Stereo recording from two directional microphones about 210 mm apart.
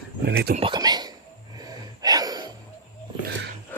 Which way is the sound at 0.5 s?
25° right (ahead or behind).